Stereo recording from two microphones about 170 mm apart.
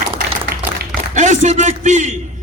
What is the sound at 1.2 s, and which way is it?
A man's voice, 45° right (ahead or behind).